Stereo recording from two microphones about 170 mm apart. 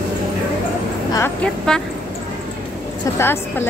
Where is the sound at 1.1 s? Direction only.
15° left (ahead or behind).